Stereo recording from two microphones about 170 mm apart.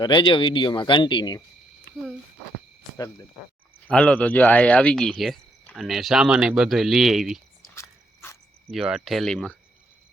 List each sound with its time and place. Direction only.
0.0 s speech: 25° left (ahead or behind)
3.8 s speech: 10° left (ahead or behind)
7.8 s biting: 15° left (ahead or behind)
8.7 s speech: centre (ahead or behind)